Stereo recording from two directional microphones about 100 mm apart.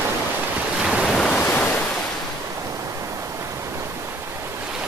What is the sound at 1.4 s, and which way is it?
Waves, 15° left (ahead or behind).